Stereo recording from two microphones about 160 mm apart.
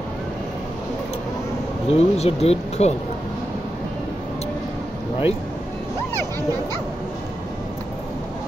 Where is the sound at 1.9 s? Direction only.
40° left (ahead or behind).